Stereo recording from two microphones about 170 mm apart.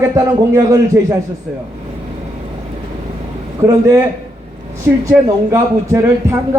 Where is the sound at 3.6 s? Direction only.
15° right (ahead or behind).